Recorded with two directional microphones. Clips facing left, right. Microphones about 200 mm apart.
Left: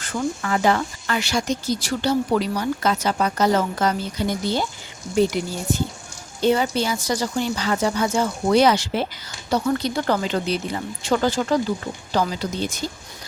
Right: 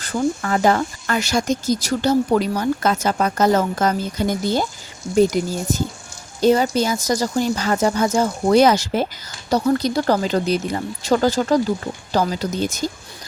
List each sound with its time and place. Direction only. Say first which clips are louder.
0.0 s speech: right 4 dB; 35° right (ahead or behind)